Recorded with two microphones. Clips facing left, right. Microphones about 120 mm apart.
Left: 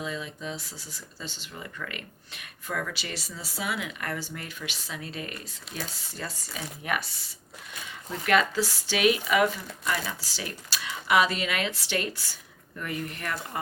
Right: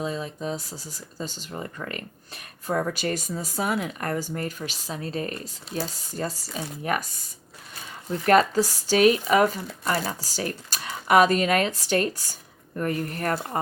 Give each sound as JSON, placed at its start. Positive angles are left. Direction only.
{"t": 0.0, "sound": "speech", "side_deg": -40}